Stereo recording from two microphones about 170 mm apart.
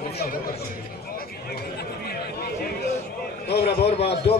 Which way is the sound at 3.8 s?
35° left (ahead or behind).